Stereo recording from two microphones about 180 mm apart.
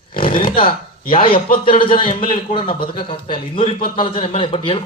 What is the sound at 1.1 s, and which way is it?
A man's voice, 30° left (ahead or behind).